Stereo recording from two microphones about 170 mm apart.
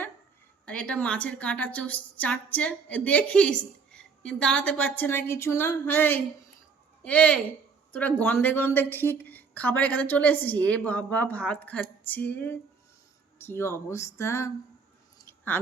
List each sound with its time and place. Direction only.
0.6 s a woman's voice: 5° left (ahead or behind)
15.3 s chewing: 10° left (ahead or behind)